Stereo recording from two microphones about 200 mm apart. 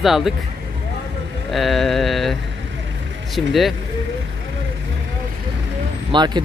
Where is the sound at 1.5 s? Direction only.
Centre (ahead or behind).